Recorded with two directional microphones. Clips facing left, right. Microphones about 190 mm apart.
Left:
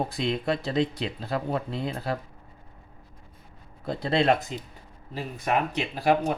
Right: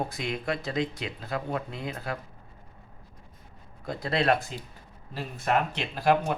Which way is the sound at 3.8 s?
25° left (ahead or behind).